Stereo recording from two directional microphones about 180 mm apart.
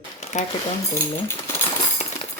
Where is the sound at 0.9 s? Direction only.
15° left (ahead or behind).